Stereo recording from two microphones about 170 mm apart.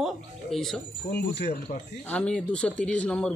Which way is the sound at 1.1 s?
75° left (ahead or behind).